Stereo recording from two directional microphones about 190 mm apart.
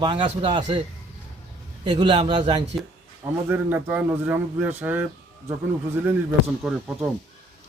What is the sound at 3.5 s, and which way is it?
A man's voice, 10° right (ahead or behind).